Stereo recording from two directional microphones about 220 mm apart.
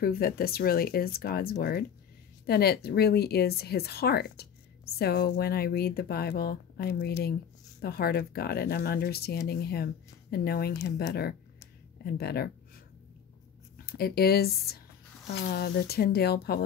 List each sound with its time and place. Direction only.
0.0 s speech: 40° left (ahead or behind)
13.8 s speech: 45° left (ahead or behind)